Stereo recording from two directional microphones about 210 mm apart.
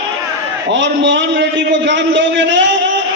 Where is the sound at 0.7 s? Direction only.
60° right (ahead or behind).